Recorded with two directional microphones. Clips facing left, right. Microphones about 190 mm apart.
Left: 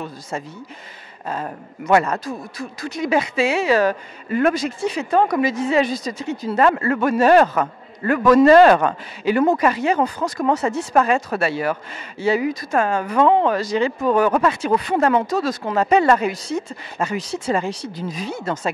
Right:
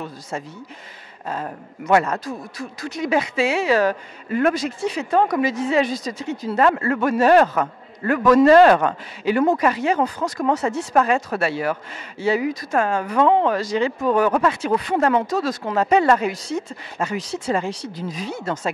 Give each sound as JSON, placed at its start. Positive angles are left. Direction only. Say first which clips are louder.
{"t": 0.3, "sound": "speech", "louder": "left 1 dB", "side_deg": 10}